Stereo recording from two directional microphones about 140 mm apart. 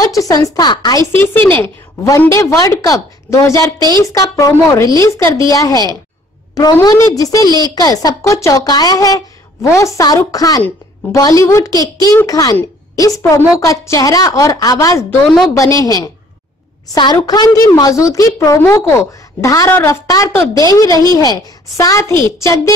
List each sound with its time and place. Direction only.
0.0 s a woman's voice: 25° left (ahead or behind)
1.2 s a woman's voice: 15° left (ahead or behind)
15.2 s a woman's voice: centre (ahead or behind)
15.5 s a woman's voice: 25° left (ahead or behind)